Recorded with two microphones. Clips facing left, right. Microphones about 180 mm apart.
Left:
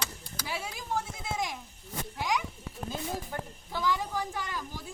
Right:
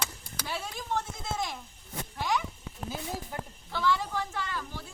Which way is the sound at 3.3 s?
5° right (ahead or behind).